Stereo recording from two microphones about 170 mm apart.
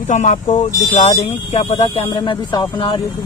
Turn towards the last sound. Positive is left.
turn(degrees=30)  # may be behind; listen again after turning